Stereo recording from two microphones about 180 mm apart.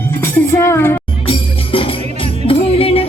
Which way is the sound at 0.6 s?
15° left (ahead or behind).